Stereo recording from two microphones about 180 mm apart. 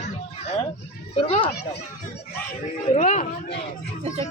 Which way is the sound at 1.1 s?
30° left (ahead or behind).